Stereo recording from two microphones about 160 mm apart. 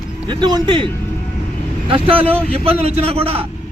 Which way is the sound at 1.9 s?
35° right (ahead or behind).